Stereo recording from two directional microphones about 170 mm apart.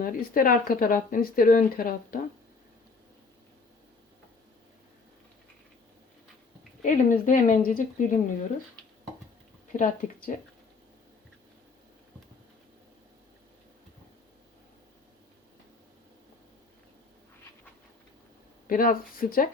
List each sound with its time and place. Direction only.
0.0 s speech: 55° left (ahead or behind)
6.8 s a woman's voice: 50° left (ahead or behind)
9.7 s a woman's voice: 50° left (ahead or behind)
18.7 s speech: 55° left (ahead or behind)